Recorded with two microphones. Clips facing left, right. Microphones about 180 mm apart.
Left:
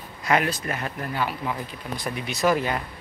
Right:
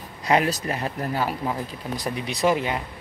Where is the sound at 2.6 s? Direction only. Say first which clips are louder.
Even; 20° right (ahead or behind).